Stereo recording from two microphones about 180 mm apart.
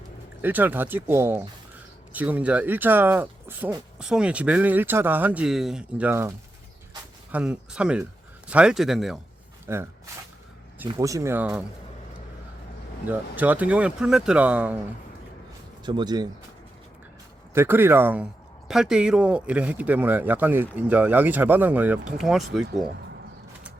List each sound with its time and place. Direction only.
0.4 s speech: 10° right (ahead or behind)
9.7 s speech: 15° right (ahead or behind)
10.9 s speech: 20° right (ahead or behind)
13.1 s speech: 10° right (ahead or behind)
15.8 s speech: 25° right (ahead or behind)
17.5 s speech: 15° right (ahead or behind)